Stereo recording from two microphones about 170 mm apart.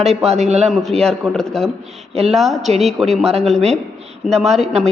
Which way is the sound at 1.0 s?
5° left (ahead or behind).